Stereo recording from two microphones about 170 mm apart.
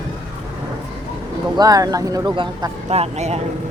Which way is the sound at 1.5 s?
20° right (ahead or behind).